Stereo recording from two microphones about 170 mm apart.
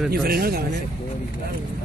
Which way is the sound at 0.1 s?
65° right (ahead or behind).